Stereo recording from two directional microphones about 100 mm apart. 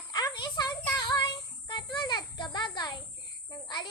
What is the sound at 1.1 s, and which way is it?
Child singing, 45° left (ahead or behind).